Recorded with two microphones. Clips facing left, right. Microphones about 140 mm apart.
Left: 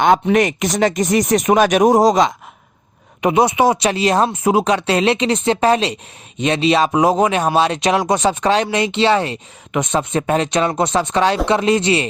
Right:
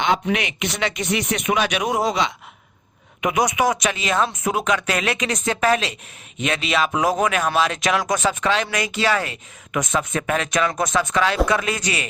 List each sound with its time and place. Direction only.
0.0 s speech: 45° left (ahead or behind)
3.2 s speech: 30° left (ahead or behind)